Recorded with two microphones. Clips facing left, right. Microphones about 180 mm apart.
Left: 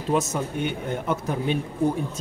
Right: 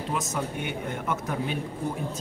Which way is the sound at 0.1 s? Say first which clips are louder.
Left 7 dB; 30° left (ahead or behind).